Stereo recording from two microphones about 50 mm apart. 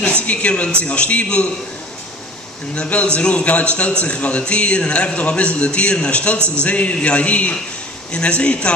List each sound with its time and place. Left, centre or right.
0.0 s a man's voice: left
2.7 s a man's voice: left